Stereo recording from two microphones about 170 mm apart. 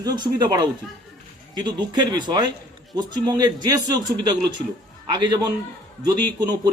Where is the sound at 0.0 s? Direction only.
25° right (ahead or behind).